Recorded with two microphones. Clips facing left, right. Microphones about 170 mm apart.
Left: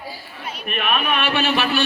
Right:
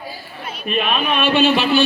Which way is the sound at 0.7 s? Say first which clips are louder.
Right 3 dB; 25° right (ahead or behind).